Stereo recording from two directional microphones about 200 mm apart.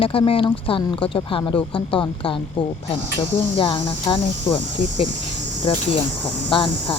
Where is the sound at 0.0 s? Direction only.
30° left (ahead or behind).